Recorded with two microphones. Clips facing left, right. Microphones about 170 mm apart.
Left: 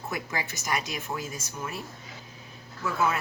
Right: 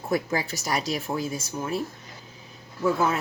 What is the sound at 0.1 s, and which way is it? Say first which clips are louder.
Speech: right 10 dB; 35° right (ahead or behind).